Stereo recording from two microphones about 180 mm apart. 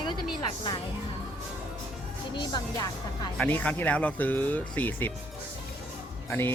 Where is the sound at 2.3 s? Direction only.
25° left (ahead or behind).